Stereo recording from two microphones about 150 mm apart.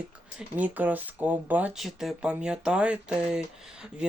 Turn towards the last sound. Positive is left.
turn(degrees=-5)  # may be behind; listen again after turning